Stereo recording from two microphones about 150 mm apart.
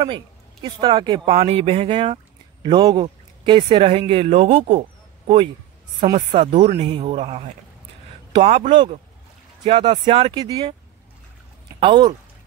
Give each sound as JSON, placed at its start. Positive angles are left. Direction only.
{"t": 0.0, "sound": "speech", "side_deg": -35}
{"t": 1.3, "sound": "a man's voice", "side_deg": -40}
{"t": 6.1, "sound": "a man's voice", "side_deg": -45}
{"t": 8.5, "sound": "a man's voice", "side_deg": -35}
{"t": 10.4, "sound": "speech", "side_deg": -25}
{"t": 11.8, "sound": "speech", "side_deg": -30}